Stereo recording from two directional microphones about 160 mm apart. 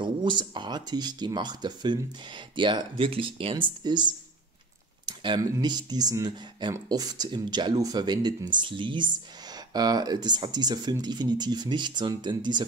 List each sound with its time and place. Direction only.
0.0 s speech: 30° right (ahead or behind)